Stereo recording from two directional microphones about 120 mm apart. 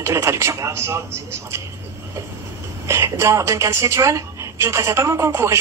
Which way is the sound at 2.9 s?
25° right (ahead or behind).